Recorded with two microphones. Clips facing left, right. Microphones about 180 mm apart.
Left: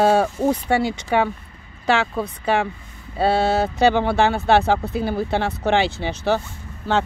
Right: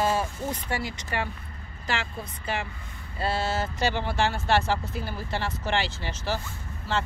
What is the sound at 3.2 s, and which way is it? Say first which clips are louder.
Speech: left 9 dB; 65° left (ahead or behind).